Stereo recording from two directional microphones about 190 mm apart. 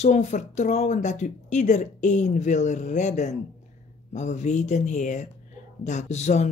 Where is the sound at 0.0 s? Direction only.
40° left (ahead or behind).